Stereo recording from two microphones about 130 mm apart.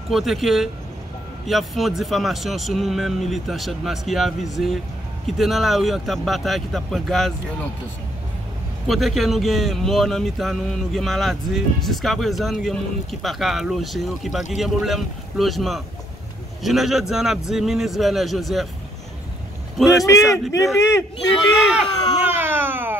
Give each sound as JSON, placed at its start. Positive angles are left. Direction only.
{"t": 0.1, "sound": "speech", "side_deg": 0}
{"t": 8.8, "sound": "speech", "side_deg": 0}
{"t": 19.8, "sound": "speech", "side_deg": 0}
{"t": 20.1, "sound": "a man's voice", "side_deg": 25}
{"t": 21.7, "sound": "baby cry", "side_deg": -15}